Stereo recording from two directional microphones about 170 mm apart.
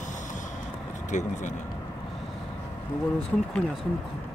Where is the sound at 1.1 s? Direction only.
45° left (ahead or behind).